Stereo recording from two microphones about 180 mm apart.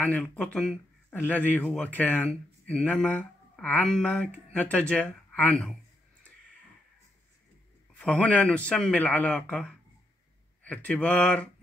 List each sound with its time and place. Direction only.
0.0 s speech: 10° left (ahead or behind)
8.0 s speech: 5° left (ahead or behind)